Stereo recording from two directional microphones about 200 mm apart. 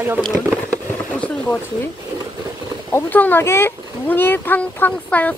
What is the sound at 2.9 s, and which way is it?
Speech, 10° left (ahead or behind).